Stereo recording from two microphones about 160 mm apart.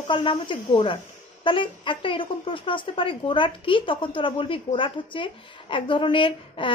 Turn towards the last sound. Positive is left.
turn(degrees=30)  # may be behind; listen again after turning